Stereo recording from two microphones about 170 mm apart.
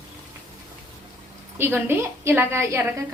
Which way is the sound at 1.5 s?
15° right (ahead or behind).